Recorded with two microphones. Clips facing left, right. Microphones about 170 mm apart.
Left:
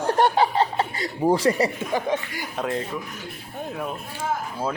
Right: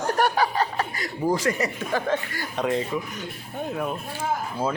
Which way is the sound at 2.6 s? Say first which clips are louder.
Right 3 dB; centre (ahead or behind).